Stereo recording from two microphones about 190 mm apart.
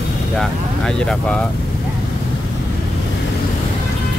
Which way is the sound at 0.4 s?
5° left (ahead or behind).